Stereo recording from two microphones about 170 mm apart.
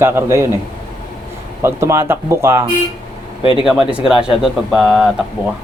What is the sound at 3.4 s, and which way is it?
Speech, 30° left (ahead or behind).